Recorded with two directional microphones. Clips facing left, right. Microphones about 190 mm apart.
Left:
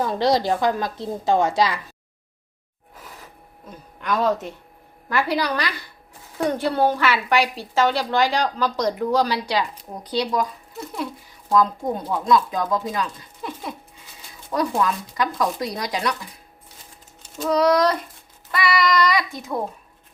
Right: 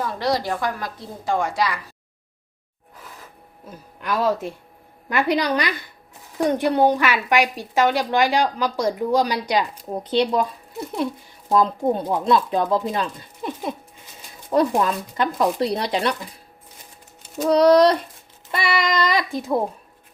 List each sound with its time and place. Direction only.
0.0 s a woman's voice: 25° left (ahead or behind)
3.7 s a woman's voice: 5° right (ahead or behind)
5.0 s a woman's voice: 20° right (ahead or behind)
14.8 s speech: 30° right (ahead or behind)
17.5 s speech: 30° right (ahead or behind)